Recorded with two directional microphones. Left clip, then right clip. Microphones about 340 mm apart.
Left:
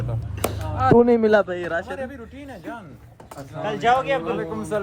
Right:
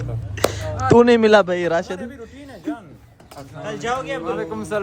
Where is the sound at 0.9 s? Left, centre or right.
Left.